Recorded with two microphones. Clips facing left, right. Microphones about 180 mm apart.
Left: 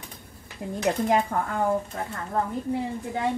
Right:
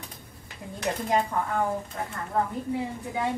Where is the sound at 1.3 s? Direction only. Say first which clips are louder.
Left 1 dB; 50° left (ahead or behind).